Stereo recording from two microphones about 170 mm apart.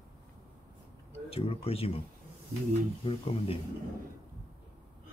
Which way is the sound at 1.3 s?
35° left (ahead or behind).